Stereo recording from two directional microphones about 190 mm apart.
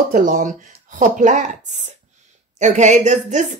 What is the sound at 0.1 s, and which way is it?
Speech, 40° right (ahead or behind).